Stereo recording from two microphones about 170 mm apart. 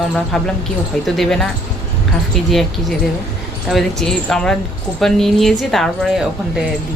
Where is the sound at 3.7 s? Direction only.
Centre (ahead or behind).